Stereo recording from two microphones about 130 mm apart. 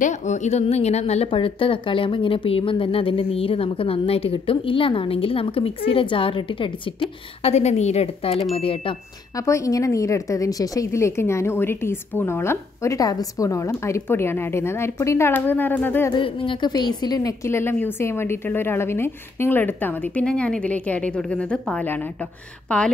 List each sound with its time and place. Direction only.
0.0 s a woman's voice: 65° left (ahead or behind); by 8.9 s 45° left (ahead or behind)
9.5 s a woman's voice: 25° left (ahead or behind)
16.1 s a woman's voice: 40° left (ahead or behind)
17.5 s a woman's voice: 20° left (ahead or behind)